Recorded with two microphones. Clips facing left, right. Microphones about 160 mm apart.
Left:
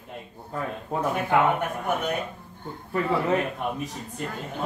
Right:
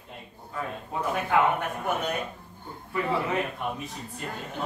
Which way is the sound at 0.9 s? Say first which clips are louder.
Left 5 dB; 45° left (ahead or behind).